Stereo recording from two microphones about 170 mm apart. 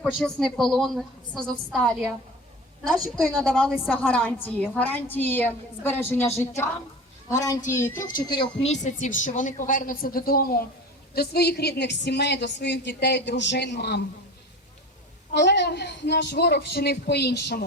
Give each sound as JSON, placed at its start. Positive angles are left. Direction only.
{"t": 0.2, "sound": "a woman's voice", "side_deg": 5}
{"t": 3.4, "sound": "a woman's voice", "side_deg": 5}
{"t": 7.9, "sound": "a woman's voice", "side_deg": 50}
{"t": 8.3, "sound": "speech", "side_deg": 30}
{"t": 8.7, "sound": "a woman's voice", "side_deg": 45}
{"t": 15.3, "sound": "a woman's voice", "side_deg": 90}